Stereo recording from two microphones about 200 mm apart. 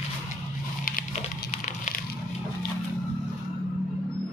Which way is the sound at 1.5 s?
40° left (ahead or behind).